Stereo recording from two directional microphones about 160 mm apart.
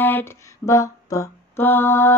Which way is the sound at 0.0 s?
15° left (ahead or behind).